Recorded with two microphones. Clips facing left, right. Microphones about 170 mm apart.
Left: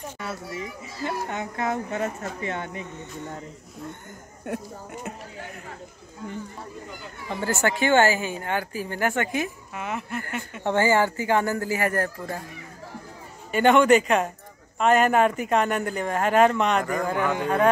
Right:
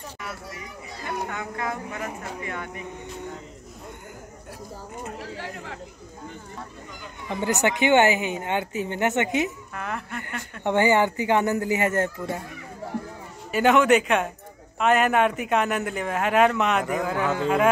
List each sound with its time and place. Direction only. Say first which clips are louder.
0.2 s a child's voice: left 5 dB; 25° left (ahead or behind)
5.2 s speech: right 4 dB; 90° right
7.3 s a woman's voice: right 1 dB; 20° right (ahead or behind)
9.8 s a man's voice: left 3 dB; 5° left (ahead or behind)
10.6 s a woman's voice: right 1 dB; 15° right (ahead or behind)
13.5 s a man's voice: left 1 dB; centre (ahead or behind)